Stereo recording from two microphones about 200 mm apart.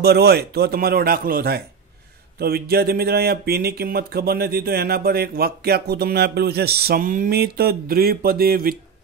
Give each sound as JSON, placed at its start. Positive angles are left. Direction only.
{"t": 0.0, "sound": "speech", "side_deg": -55}